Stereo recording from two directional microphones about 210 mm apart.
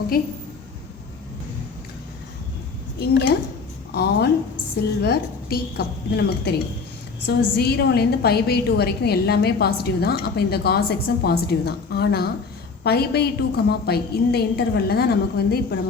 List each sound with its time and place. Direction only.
3.0 s a woman's voice: 50° left (ahead or behind)